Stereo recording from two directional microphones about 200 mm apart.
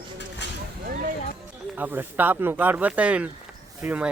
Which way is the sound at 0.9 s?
40° right (ahead or behind).